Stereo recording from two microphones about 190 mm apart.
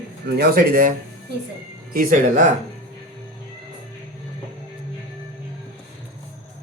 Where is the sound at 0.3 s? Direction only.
55° right (ahead or behind).